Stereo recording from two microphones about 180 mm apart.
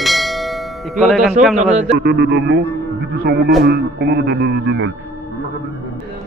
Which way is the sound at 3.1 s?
55° right (ahead or behind).